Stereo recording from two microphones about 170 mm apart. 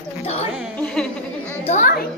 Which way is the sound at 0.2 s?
35° left (ahead or behind).